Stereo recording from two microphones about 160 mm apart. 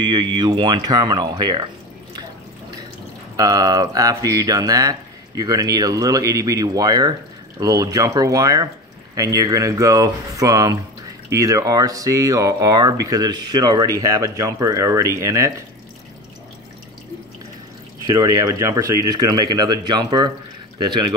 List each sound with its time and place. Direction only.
0.0 s speech: 30° right (ahead or behind)
3.3 s speech: 25° right (ahead or behind)
18.0 s speech: 25° right (ahead or behind)